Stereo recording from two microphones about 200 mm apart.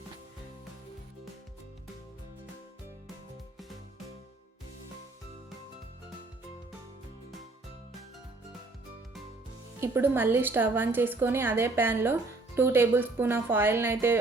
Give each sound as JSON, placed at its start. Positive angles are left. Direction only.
{"t": 9.8, "sound": "a woman's voice", "side_deg": -10}